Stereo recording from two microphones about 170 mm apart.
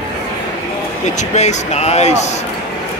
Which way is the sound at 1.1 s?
40° left (ahead or behind).